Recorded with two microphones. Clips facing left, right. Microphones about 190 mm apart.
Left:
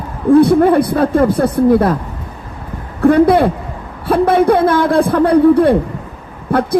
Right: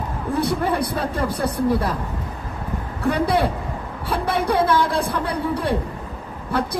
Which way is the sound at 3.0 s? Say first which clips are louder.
Left 11 dB; 50° left (ahead or behind).